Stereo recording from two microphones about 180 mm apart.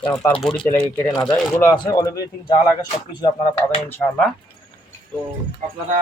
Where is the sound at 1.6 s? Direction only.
20° left (ahead or behind).